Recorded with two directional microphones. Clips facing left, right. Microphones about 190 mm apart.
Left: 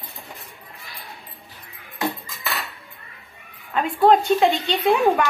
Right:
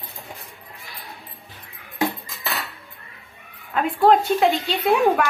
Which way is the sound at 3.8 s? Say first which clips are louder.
Even; centre (ahead or behind).